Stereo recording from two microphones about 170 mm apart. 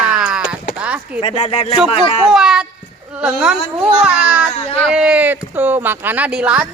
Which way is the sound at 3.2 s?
5° right (ahead or behind).